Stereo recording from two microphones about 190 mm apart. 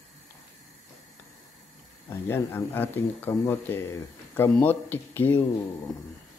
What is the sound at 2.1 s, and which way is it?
Speech, 10° left (ahead or behind).